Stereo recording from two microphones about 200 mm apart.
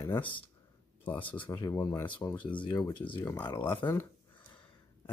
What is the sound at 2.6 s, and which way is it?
Speech, 20° left (ahead or behind).